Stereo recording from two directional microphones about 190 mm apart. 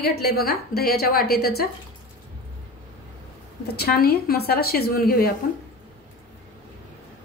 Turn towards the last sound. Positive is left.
turn(degrees=55)  # may be behind; listen again after turning